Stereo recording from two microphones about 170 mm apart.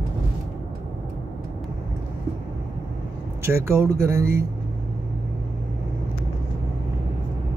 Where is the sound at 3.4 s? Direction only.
15° right (ahead or behind).